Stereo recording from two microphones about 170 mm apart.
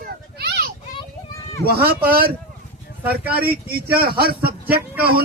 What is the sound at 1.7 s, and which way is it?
Speech, 65° right (ahead or behind).